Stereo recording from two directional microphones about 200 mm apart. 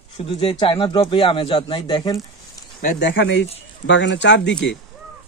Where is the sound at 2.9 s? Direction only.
60° left (ahead or behind).